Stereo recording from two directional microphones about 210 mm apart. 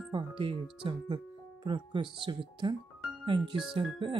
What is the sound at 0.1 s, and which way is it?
Speech, 25° right (ahead or behind).